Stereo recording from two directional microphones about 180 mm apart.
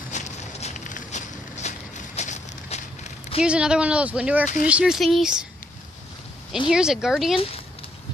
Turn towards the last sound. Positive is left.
turn(degrees=0)  # may be behind; listen again after turning